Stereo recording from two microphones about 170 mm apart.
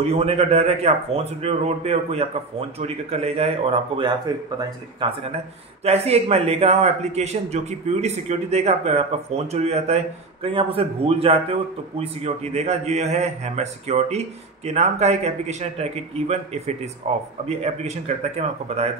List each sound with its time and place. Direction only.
0.0 s a man's voice: 35° right (ahead or behind)